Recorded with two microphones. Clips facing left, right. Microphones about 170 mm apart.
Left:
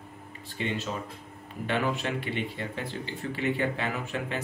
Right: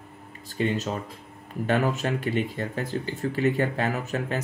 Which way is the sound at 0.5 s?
40° right (ahead or behind).